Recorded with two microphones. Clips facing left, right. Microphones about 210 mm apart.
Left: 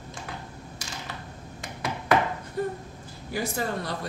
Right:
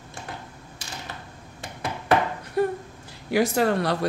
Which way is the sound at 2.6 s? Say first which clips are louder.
Right 6 dB; 75° right (ahead or behind).